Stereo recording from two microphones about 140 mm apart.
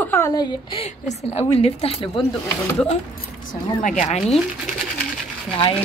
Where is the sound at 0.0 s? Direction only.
15° left (ahead or behind).